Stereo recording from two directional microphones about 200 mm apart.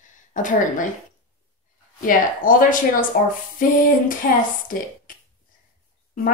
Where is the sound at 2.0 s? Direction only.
45° left (ahead or behind).